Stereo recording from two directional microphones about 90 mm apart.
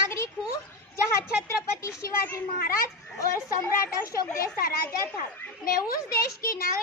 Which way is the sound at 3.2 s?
35° left (ahead or behind).